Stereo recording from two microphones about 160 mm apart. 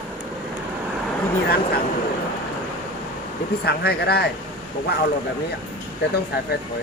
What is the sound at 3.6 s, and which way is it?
Speech, 75° left (ahead or behind).